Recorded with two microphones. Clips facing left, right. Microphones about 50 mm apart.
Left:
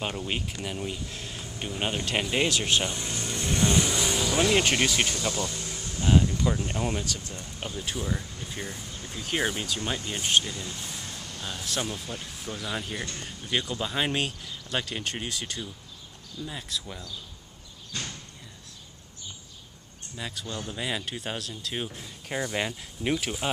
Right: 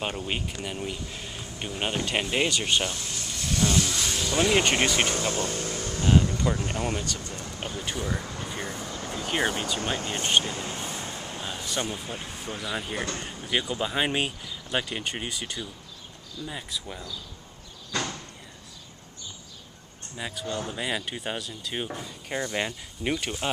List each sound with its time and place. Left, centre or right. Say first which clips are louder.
0.3 s speech: right 1 dB; centre
2.8 s speech: even; left; by 4.5 s centre
4.5 s speech: right 3 dB; centre
5.0 s speech: right 2 dB; right
6.1 s speech: even; centre
8.2 s speech: right 5 dB; right
8.7 s a sound: right 6 dB; right
9.3 s speech: right 1 dB; centre
9.9 s speech: even; right
10.9 s vehicle: right 4 dB; right
11.6 s speech: even; centre
11.9 s speech: right 2 dB; centre
17.9 s sliding door: right 7 dB; right
20.2 s speech: right 4 dB; centre